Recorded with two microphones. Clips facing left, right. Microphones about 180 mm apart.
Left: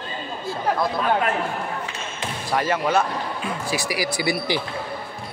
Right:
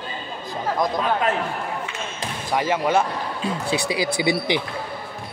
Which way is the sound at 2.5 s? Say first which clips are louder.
Right 1 dB; 15° right (ahead or behind).